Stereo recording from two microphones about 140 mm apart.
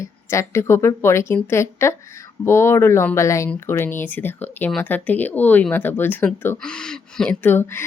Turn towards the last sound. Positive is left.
turn(degrees=15)  # may be behind; listen again after turning